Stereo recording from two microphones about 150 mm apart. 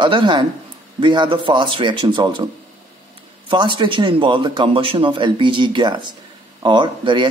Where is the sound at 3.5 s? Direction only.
30° right (ahead or behind).